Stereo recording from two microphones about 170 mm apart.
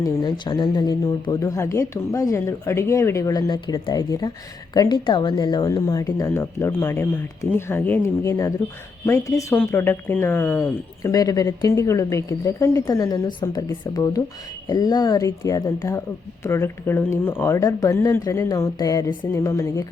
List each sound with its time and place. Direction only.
0.0 s speech: 25° left (ahead or behind)